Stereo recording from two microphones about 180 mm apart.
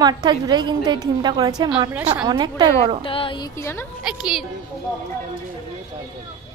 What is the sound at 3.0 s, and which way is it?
Music, 30° left (ahead or behind).